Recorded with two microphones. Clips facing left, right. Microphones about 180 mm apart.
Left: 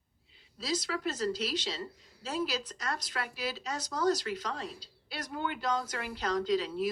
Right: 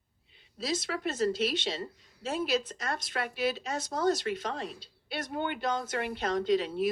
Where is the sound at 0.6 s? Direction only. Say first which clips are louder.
Right 1 dB; 25° right (ahead or behind).